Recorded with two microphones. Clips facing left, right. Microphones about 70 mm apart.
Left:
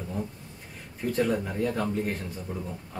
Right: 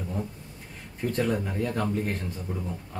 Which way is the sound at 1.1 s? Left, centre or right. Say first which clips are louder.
Left 1 dB; centre.